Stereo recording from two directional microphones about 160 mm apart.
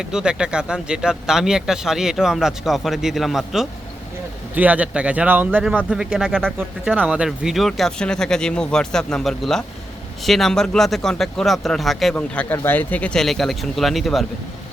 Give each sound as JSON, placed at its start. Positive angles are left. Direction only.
{"t": 0.0, "sound": "speech", "side_deg": -5}